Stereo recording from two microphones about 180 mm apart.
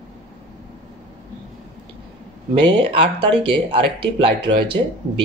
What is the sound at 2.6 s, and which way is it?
Speech, 25° right (ahead or behind).